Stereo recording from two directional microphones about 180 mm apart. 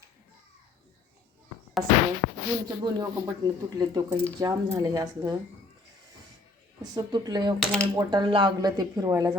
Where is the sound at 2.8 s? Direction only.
20° right (ahead or behind).